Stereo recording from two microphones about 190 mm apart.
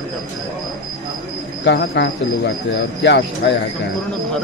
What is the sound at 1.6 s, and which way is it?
Speech, 65° left (ahead or behind).